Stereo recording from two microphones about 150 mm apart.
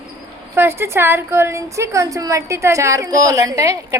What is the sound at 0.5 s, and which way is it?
A woman's voice, 15° right (ahead or behind).